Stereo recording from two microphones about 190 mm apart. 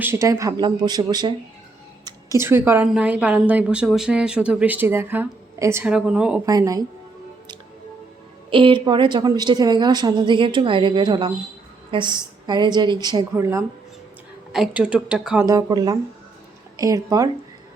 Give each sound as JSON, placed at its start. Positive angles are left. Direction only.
{"t": 0.0, "sound": "a woman's voice", "side_deg": -15}
{"t": 6.4, "sound": "a woman's voice", "side_deg": -20}
{"t": 8.4, "sound": "a woman's voice", "side_deg": -25}
{"t": 15.4, "sound": "a woman's voice", "side_deg": -20}